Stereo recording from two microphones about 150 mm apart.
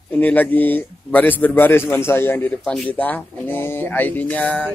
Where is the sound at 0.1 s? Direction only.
10° left (ahead or behind).